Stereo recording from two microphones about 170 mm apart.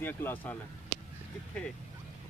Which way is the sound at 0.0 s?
10° left (ahead or behind).